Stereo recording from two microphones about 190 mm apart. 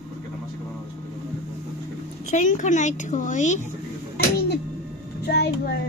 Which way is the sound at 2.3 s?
40° left (ahead or behind).